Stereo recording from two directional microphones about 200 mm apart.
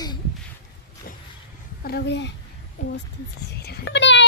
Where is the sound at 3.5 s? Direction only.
55° left (ahead or behind).